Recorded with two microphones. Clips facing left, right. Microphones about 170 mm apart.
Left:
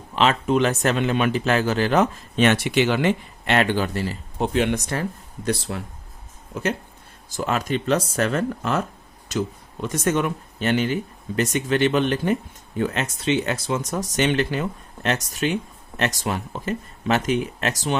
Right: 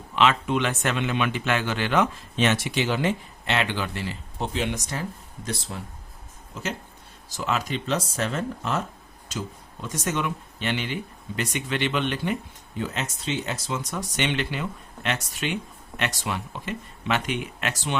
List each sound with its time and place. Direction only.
0.2 s speech: 40° left (ahead or behind)
2.4 s speech: 60° left (ahead or behind); by 4.2 s 40° left (ahead or behind)
4.4 s speech: 55° left (ahead or behind)
9.8 s speech: 65° left (ahead or behind); by 17.9 s 40° left (ahead or behind)